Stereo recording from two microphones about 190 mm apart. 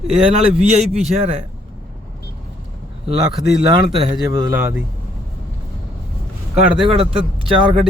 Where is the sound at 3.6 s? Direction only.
30° right (ahead or behind).